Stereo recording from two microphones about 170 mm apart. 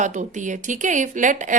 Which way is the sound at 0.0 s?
45° right (ahead or behind).